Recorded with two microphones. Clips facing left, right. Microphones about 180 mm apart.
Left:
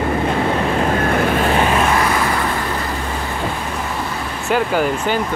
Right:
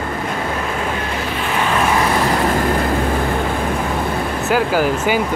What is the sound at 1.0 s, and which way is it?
Vehicle, 55° left (ahead or behind).